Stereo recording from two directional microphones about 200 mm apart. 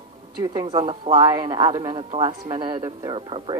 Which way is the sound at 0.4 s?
20° right (ahead or behind).